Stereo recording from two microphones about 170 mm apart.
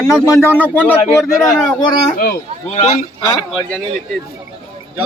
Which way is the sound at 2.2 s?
65° left (ahead or behind).